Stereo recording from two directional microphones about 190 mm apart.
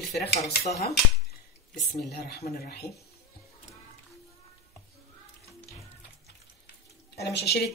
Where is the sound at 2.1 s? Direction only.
55° left (ahead or behind).